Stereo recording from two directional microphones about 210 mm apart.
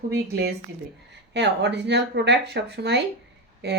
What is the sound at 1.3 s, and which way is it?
Speech, 55° right (ahead or behind).